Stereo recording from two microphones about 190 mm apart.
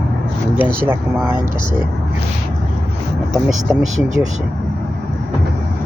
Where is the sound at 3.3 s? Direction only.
Centre (ahead or behind).